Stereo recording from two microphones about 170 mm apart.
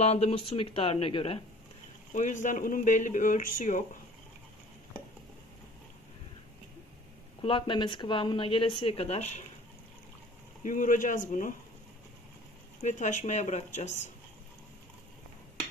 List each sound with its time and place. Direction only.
0.0 s speech: 40° left (ahead or behind)
2.1 s speech: 45° left (ahead or behind)
7.4 s a woman's voice: 30° left (ahead or behind)
10.6 s speech: 50° left (ahead or behind)
12.8 s speech: 45° left (ahead or behind)